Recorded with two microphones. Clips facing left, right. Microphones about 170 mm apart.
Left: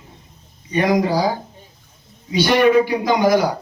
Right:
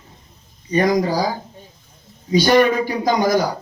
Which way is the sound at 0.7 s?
40° right (ahead or behind).